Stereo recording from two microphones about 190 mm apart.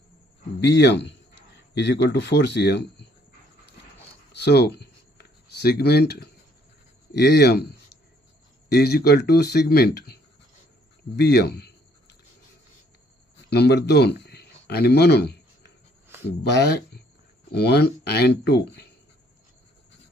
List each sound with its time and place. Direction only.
0.6 s speech: 65° left (ahead or behind)
4.3 s writing: 65° left (ahead or behind)
7.1 s speech: 60° left (ahead or behind)
8.7 s speech: 55° left (ahead or behind)
11.2 s speech: 60° left (ahead or behind)
13.5 s a sound: 60° left (ahead or behind)
16.4 s speech: 60° left (ahead or behind)